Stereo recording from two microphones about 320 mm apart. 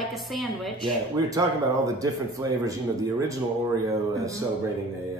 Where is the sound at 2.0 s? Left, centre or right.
Centre.